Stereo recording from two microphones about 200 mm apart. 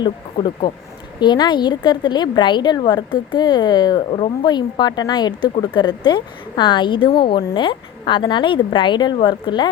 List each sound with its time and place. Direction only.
0.0 s a woman's voice: 25° left (ahead or behind)